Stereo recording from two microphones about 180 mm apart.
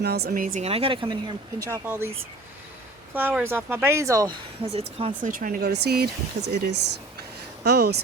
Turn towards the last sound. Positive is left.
turn(degrees=-65)  # may be behind; listen again after turning